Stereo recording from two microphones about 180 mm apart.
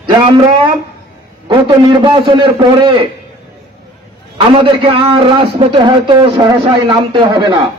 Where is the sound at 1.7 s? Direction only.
25° right (ahead or behind).